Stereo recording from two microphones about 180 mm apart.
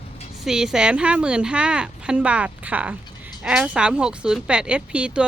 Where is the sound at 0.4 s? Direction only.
5° right (ahead or behind).